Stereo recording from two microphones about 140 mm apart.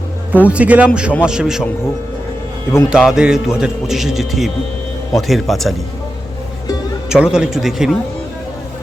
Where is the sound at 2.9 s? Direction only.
5° right (ahead or behind).